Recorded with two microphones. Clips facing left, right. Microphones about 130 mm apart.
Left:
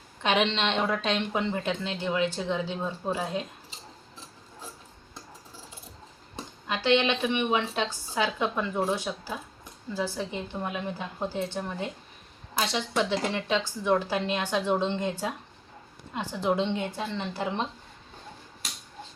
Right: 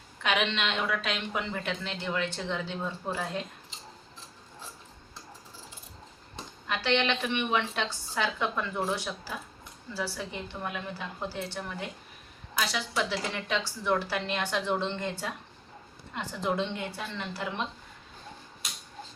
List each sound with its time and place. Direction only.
0.2 s speech: 30° left (ahead or behind)
6.3 s a woman's voice: 15° left (ahead or behind)
13.0 s a woman's voice: 20° left (ahead or behind)